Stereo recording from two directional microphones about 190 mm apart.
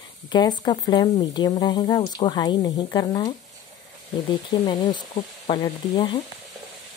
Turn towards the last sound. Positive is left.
turn(degrees=25)  # may be behind; listen again after turning